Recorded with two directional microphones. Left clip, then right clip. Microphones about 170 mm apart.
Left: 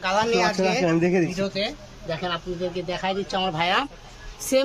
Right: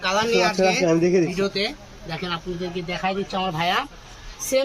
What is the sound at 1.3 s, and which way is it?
Speech, 70° left (ahead or behind).